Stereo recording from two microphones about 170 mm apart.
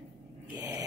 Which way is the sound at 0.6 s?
20° right (ahead or behind).